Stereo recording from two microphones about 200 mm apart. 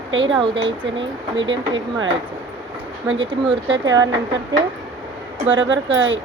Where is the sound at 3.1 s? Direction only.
65° right (ahead or behind).